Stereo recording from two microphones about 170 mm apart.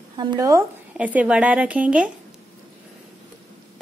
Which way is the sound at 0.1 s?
25° right (ahead or behind).